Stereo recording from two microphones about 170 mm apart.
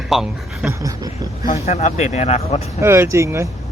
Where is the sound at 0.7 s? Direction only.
20° right (ahead or behind).